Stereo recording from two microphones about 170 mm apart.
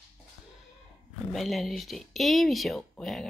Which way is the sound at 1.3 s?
Centre (ahead or behind).